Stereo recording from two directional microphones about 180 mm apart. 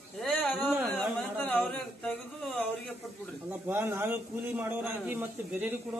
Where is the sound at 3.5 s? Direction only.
10° right (ahead or behind).